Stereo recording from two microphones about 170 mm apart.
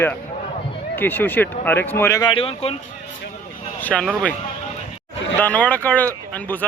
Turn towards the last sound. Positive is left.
turn(degrees=10)  # may be behind; listen again after turning